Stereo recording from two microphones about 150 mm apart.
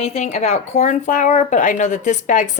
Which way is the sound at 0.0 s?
45° left (ahead or behind).